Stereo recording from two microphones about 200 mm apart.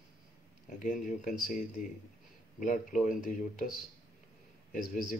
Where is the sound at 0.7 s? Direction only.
40° left (ahead or behind).